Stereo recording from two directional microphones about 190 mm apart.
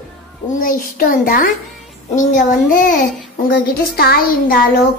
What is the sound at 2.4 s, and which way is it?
Speech, 45° left (ahead or behind).